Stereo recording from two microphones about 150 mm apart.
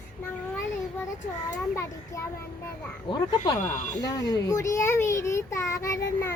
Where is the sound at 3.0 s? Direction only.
30° left (ahead or behind).